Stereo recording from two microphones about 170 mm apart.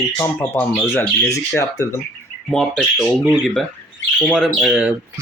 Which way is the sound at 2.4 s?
5° left (ahead or behind).